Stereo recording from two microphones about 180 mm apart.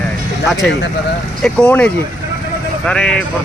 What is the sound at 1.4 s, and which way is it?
Speech, 5° left (ahead or behind).